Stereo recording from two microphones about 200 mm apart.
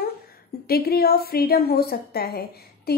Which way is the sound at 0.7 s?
50° left (ahead or behind).